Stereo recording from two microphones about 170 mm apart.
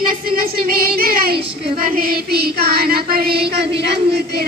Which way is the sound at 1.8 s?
60° right (ahead or behind).